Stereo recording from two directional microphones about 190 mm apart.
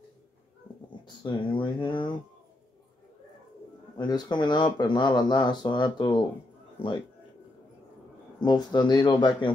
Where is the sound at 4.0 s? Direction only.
25° left (ahead or behind).